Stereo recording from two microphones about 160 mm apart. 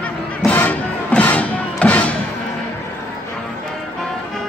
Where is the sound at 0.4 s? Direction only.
10° left (ahead or behind).